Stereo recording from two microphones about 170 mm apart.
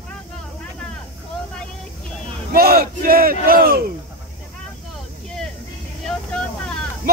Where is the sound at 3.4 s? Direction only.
60° right (ahead or behind).